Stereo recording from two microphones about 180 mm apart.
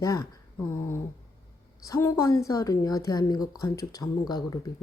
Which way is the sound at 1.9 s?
15° left (ahead or behind).